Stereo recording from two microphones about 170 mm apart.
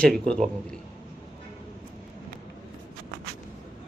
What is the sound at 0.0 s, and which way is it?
Speech, 5° left (ahead or behind).